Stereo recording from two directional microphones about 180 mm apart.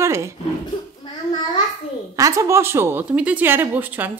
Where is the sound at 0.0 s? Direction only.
15° right (ahead or behind).